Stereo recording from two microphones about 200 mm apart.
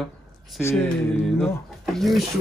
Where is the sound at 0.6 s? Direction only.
15° left (ahead or behind).